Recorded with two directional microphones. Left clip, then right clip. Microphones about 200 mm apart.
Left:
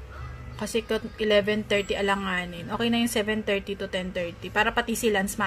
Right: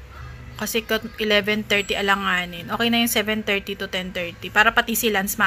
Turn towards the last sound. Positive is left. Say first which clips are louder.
# right 3 dB
turn(degrees=5)  # may be behind; listen again after turning